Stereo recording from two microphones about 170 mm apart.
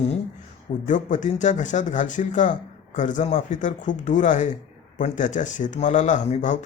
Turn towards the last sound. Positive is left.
turn(degrees=45)  # may be behind; listen again after turning